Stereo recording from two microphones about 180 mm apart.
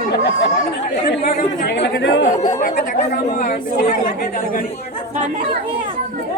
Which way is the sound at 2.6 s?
60° left (ahead or behind).